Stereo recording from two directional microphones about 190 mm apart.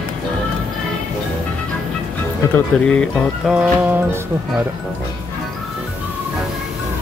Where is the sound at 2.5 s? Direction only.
5° left (ahead or behind).